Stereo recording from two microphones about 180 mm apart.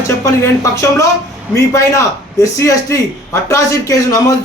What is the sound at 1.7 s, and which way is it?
A man's voice, 15° left (ahead or behind).